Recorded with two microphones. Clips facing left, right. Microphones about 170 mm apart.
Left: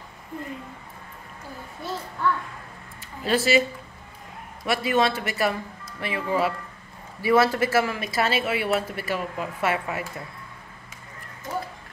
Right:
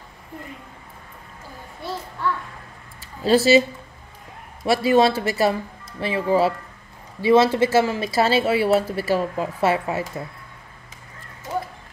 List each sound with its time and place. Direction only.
3.3 s speech: 30° right (ahead or behind)
4.6 s speech: 30° right (ahead or behind)